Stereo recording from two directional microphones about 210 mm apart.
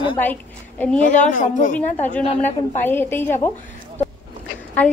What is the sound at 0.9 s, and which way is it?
A woman's voice, 35° left (ahead or behind).